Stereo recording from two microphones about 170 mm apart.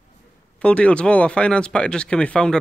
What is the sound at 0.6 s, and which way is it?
Speech, 5° left (ahead or behind).